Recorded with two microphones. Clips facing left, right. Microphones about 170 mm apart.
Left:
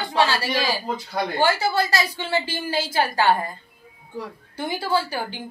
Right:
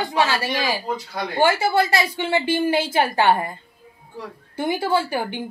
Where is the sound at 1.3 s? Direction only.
20° right (ahead or behind).